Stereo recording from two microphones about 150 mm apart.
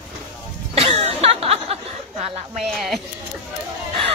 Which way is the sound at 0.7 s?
45° right (ahead or behind).